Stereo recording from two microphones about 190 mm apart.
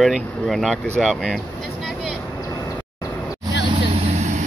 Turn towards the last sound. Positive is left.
turn(degrees=-40)  # may be behind; listen again after turning